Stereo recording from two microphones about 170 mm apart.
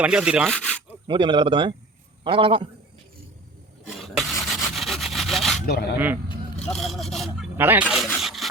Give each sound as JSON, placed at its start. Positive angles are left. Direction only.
{"t": 0.0, "sound": "speech", "side_deg": -5}
{"t": 0.5, "sound": "speech", "side_deg": 5}
{"t": 1.0, "sound": "a man's voice", "side_deg": -30}
{"t": 3.8, "sound": "rub", "side_deg": 0}
{"t": 5.6, "sound": "speech", "side_deg": 70}
{"t": 6.6, "sound": "vehicle", "side_deg": 5}
{"t": 7.5, "sound": "a sound", "side_deg": -10}